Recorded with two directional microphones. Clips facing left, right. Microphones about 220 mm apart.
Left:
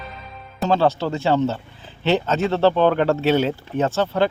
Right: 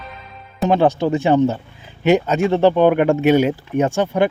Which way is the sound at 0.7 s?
15° right (ahead or behind).